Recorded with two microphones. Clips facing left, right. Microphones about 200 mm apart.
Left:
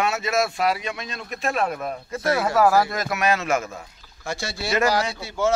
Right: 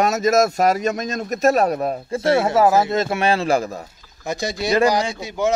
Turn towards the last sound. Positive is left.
turn(degrees=-20)  # may be behind; listen again after turning